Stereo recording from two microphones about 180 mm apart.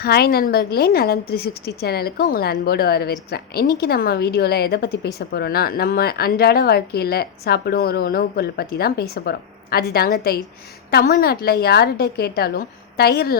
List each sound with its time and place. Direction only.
0.0 s a woman's voice: 60° left (ahead or behind)